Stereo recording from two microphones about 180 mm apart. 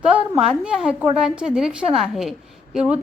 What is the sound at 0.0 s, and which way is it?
A woman's voice, 5° right (ahead or behind).